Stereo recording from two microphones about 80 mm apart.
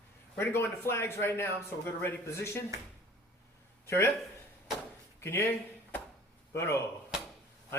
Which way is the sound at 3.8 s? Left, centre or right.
Left.